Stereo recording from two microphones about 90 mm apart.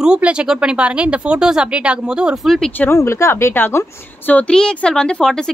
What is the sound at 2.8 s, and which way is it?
A woman's voice, 30° left (ahead or behind).